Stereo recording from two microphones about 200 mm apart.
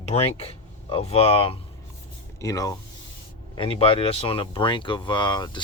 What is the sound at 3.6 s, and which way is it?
Speech, 25° left (ahead or behind).